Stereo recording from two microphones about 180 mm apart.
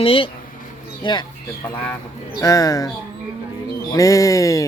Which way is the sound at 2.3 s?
20° left (ahead or behind).